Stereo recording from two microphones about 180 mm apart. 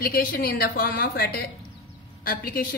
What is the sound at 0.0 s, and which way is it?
A woman's voice, 55° left (ahead or behind).